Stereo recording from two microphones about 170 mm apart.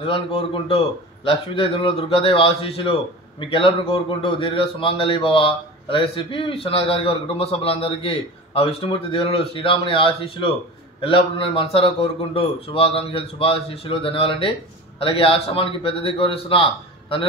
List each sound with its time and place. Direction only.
0.0 s a man's voice: 35° left (ahead or behind)